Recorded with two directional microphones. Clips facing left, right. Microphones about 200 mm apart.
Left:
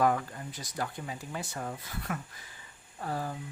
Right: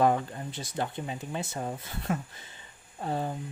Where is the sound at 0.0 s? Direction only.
25° right (ahead or behind).